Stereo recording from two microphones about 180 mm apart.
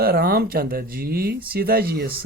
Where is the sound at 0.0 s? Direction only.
55° right (ahead or behind).